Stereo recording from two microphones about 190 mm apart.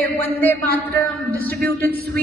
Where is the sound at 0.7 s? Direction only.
55° right (ahead or behind).